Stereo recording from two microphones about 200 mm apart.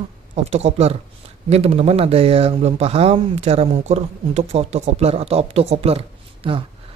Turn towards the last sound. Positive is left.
turn(degrees=-25)  # may be behind; listen again after turning